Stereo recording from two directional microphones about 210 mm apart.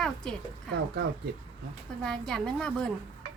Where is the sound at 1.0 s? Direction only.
50° right (ahead or behind).